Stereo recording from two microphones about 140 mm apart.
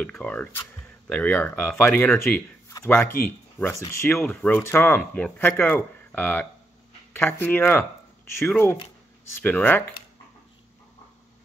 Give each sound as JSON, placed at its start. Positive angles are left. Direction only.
{"t": 0.0, "sound": "speech", "side_deg": 10}